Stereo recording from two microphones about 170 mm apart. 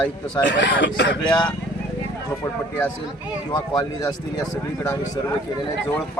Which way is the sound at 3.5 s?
25° left (ahead or behind).